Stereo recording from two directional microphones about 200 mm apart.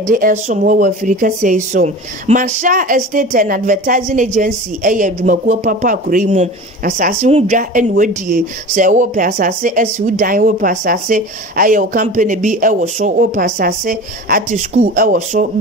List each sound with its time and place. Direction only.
0.0 s speech: 45° right (ahead or behind)